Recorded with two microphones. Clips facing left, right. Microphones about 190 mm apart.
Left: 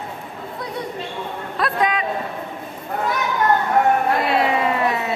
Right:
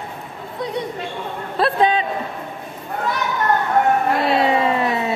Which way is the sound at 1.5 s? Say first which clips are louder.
Right 4 dB; 30° right (ahead or behind).